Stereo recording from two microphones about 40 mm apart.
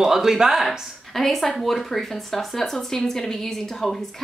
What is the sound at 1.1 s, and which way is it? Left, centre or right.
Speech, centre.